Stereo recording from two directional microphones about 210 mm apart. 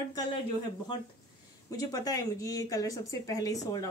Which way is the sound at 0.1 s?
20° left (ahead or behind).